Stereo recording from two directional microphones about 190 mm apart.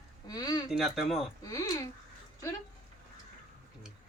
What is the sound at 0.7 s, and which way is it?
Speech, centre (ahead or behind).